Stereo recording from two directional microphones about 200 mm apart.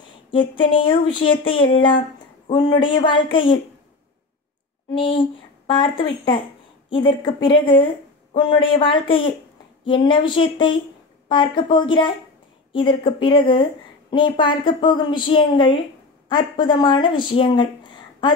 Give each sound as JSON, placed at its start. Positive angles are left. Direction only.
{"t": 0.3, "sound": "speech", "side_deg": 25}
{"t": 4.9, "sound": "a woman's voice", "side_deg": 25}